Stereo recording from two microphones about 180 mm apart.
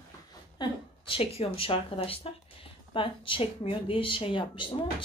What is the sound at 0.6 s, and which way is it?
A woman's voice, 30° left (ahead or behind).